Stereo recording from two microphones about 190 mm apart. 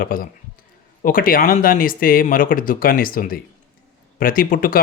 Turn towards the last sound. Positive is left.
turn(degrees=45)  # may be behind; listen again after turning